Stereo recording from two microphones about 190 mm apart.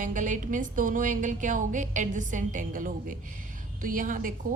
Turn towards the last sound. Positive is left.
turn(degrees=-45)  # may be behind; listen again after turning